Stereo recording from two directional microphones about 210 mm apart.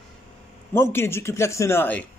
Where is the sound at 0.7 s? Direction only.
10° left (ahead or behind).